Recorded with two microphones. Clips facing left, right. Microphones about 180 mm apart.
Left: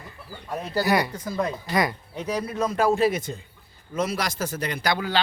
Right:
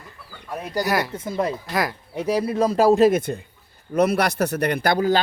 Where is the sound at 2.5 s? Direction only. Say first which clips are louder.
Right 5 dB; 30° right (ahead or behind); by 4.9 s 55° right (ahead or behind).